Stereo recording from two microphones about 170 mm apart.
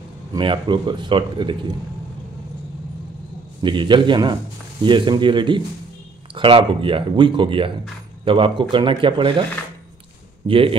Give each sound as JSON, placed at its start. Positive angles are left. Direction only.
{"t": 0.3, "sound": "a man's voice", "side_deg": -30}
{"t": 3.6, "sound": "a man's voice", "side_deg": -30}
{"t": 10.4, "sound": "speech", "side_deg": -30}